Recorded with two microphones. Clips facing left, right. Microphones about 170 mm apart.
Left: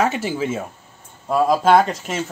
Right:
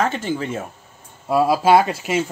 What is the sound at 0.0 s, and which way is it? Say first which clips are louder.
Speech: left 1 dB; 10° left (ahead or behind).